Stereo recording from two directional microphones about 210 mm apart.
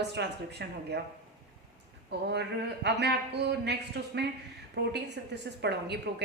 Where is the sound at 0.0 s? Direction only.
55° right (ahead or behind).